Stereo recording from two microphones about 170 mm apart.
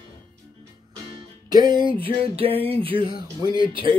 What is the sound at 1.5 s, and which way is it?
Music, 25° right (ahead or behind).